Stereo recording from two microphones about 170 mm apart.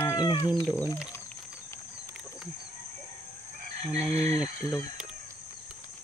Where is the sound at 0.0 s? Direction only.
20° left (ahead or behind).